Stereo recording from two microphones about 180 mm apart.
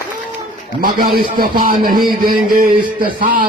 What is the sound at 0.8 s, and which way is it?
A man's voice, 55° right (ahead or behind).